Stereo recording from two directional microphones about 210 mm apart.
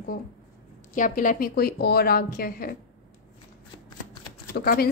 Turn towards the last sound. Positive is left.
turn(degrees=45)  # may be behind; listen again after turning